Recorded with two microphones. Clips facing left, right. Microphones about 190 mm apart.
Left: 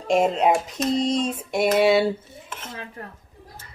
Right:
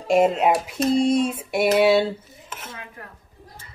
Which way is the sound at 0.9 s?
10° right (ahead or behind).